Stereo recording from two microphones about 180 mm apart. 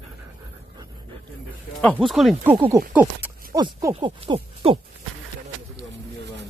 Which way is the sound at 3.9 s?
30° right (ahead or behind).